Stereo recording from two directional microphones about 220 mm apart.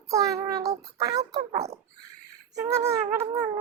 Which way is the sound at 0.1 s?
15° right (ahead or behind).